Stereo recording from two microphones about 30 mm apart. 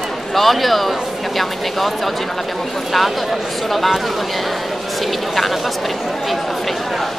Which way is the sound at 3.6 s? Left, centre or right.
Centre.